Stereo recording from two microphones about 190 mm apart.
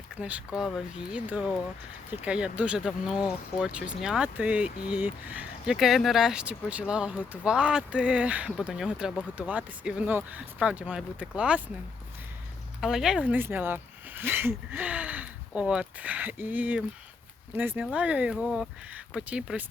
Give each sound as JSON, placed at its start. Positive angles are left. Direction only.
{"t": 0.2, "sound": "speech", "side_deg": -5}
{"t": 12.8, "sound": "speech", "side_deg": 0}